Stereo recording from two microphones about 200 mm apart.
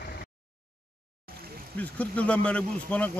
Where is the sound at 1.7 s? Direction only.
5° left (ahead or behind).